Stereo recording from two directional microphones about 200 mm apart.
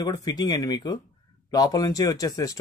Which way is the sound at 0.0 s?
20° left (ahead or behind).